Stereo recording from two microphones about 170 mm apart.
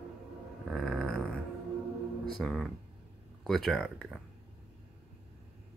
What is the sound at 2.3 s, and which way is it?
Speech, centre (ahead or behind).